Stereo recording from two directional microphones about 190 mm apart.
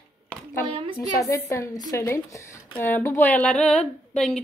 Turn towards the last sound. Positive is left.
turn(degrees=5)  # may be behind; listen again after turning